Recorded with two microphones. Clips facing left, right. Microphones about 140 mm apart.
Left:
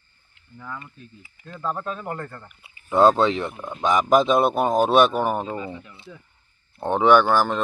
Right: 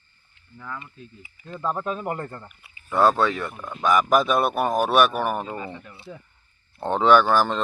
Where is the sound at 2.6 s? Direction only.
25° left (ahead or behind).